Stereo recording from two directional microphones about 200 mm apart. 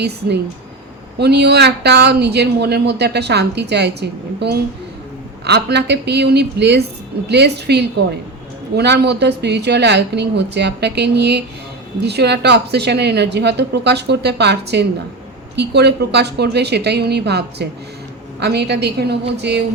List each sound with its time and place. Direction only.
1.2 s speech: 55° right (ahead or behind)